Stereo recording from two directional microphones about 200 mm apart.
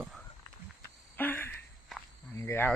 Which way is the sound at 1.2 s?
10° left (ahead or behind).